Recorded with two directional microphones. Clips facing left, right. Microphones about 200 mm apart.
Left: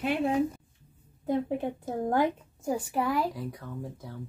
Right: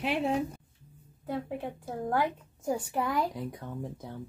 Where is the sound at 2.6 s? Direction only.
5° left (ahead or behind).